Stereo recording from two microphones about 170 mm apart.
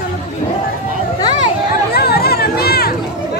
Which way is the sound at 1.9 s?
65° left (ahead or behind).